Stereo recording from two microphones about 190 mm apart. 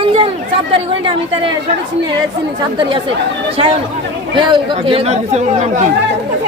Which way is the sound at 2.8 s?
25° right (ahead or behind).